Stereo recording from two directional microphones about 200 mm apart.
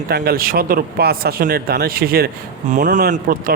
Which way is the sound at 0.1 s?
50° right (ahead or behind).